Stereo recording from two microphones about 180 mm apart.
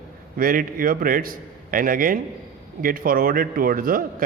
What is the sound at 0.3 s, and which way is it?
A man's voice, 50° right (ahead or behind).